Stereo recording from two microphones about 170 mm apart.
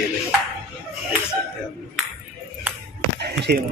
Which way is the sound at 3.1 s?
75° right (ahead or behind).